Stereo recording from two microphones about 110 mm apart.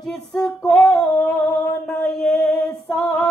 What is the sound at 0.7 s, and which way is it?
Female singing, 15° left (ahead or behind).